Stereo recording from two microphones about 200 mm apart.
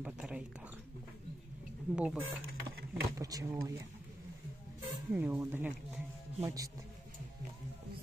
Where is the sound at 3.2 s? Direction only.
15° right (ahead or behind).